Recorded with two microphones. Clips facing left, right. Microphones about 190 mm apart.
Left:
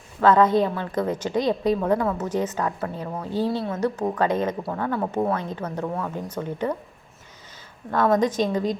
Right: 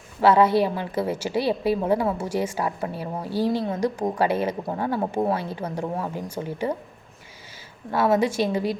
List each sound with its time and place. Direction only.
0.2 s a woman's voice: 10° right (ahead or behind)
4.7 s speech: 30° right (ahead or behind)
5.4 s a woman's voice: 10° right (ahead or behind)
5.8 s speech: 30° right (ahead or behind)
6.1 s a woman's voice: 10° right (ahead or behind)
7.9 s a woman's voice: 10° right (ahead or behind)